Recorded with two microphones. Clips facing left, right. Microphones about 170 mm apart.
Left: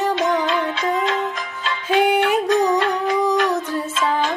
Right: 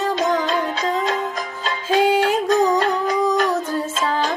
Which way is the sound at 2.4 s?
40° right (ahead or behind).